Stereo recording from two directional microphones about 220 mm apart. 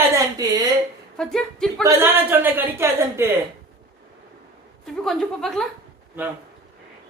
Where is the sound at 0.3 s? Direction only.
15° right (ahead or behind).